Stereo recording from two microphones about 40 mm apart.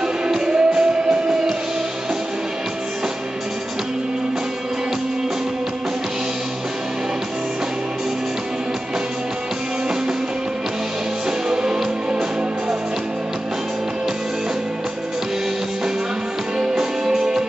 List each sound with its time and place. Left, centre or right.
0.3 s music: centre
11.2 s music: centre
16.7 s music: centre